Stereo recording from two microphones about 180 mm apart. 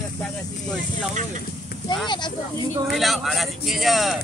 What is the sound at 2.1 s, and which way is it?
Speech, 25° left (ahead or behind).